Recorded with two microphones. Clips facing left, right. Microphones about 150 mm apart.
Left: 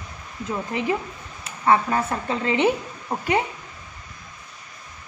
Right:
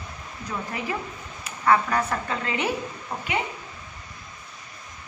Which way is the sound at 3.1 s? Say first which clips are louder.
Left 6 dB; 40° left (ahead or behind).